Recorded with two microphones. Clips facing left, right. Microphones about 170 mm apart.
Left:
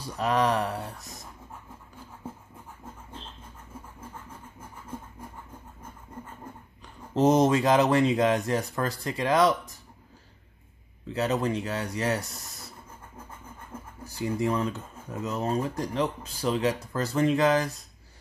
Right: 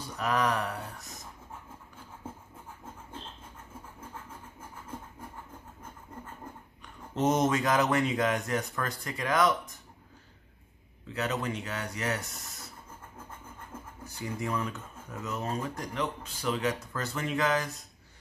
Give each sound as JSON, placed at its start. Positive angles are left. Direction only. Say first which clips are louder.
{"t": 0.2, "sound": "speech", "louder": "left 4 dB", "side_deg": 30}
{"t": 7.2, "sound": "speech", "louder": "left 5 dB", "side_deg": 35}
{"t": 11.1, "sound": "speech", "louder": "left 6 dB", "side_deg": 35}
{"t": 14.0, "sound": "speech", "louder": "left 8 dB", "side_deg": 30}